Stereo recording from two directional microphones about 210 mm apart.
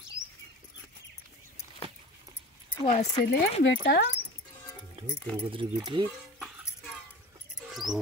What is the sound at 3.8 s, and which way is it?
Speech, 50° left (ahead or behind).